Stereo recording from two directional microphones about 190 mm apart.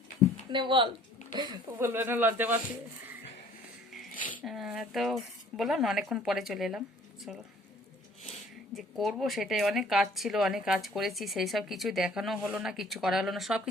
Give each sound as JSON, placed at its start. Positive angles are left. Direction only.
{"t": 0.2, "sound": "a sound", "side_deg": 20}
{"t": 0.5, "sound": "speech", "side_deg": -25}
{"t": 1.8, "sound": "speech", "side_deg": -10}
{"t": 4.4, "sound": "speech", "side_deg": 0}
{"t": 8.7, "sound": "speech", "side_deg": 0}